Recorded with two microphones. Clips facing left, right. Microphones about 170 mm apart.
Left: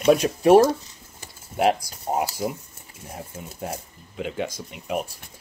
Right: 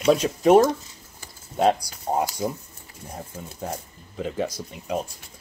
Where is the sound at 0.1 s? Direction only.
10° left (ahead or behind).